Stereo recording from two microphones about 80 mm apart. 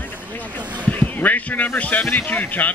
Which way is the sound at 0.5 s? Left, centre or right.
Centre.